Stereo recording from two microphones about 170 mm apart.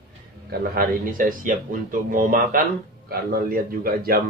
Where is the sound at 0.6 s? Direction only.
60° right (ahead or behind).